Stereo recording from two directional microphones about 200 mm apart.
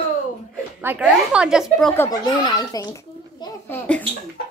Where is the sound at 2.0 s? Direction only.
20° left (ahead or behind).